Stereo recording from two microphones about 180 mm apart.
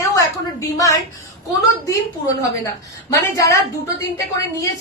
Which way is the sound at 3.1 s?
15° left (ahead or behind).